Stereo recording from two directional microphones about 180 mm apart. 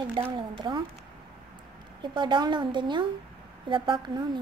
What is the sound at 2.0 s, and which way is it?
A woman's voice, 25° right (ahead or behind).